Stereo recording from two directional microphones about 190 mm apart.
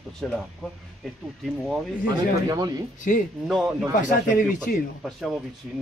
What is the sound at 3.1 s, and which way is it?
Speech, 45° left (ahead or behind).